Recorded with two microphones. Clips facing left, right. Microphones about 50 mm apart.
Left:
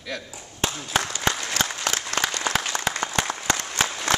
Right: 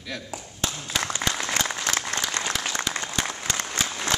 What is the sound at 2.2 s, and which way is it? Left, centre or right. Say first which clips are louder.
Applause: left 5 dB; left.